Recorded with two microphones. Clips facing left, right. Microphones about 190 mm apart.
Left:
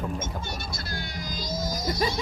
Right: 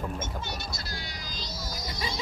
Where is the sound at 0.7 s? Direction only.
50° left (ahead or behind).